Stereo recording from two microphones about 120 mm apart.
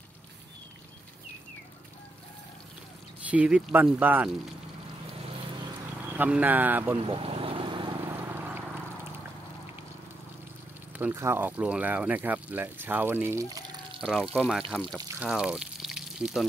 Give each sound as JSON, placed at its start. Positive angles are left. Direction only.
{"t": 3.3, "sound": "speech", "side_deg": -10}
{"t": 6.1, "sound": "speech", "side_deg": -15}
{"t": 7.0, "sound": "vehicle", "side_deg": -55}
{"t": 8.1, "sound": "vehicle", "side_deg": -20}
{"t": 11.0, "sound": "speech", "side_deg": -20}
{"t": 14.3, "sound": "speech", "side_deg": 0}
{"t": 15.1, "sound": "a sound", "side_deg": -5}